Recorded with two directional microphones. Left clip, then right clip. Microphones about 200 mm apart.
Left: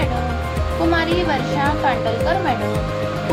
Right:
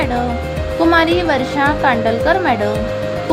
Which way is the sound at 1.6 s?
50° right (ahead or behind).